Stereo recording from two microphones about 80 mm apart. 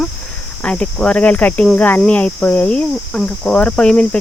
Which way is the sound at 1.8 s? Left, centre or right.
Left.